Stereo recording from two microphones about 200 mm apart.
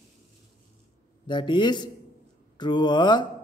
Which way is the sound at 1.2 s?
25° left (ahead or behind).